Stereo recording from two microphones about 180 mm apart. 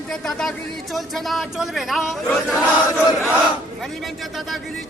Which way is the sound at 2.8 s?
20° left (ahead or behind).